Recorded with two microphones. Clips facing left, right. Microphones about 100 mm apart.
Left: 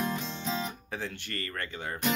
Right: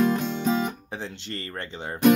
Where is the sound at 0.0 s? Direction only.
65° right (ahead or behind).